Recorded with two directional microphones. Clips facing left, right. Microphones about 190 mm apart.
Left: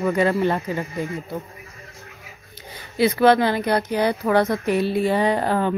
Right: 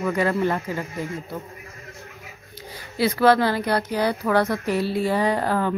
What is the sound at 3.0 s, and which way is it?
A woman's voice, 20° left (ahead or behind).